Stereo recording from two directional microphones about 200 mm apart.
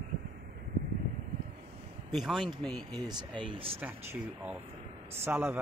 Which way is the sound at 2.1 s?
Centre (ahead or behind).